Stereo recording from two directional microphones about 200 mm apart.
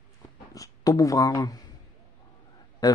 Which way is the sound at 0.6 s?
15° left (ahead or behind).